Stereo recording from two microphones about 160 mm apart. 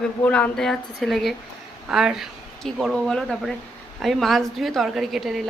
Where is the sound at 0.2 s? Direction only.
10° left (ahead or behind).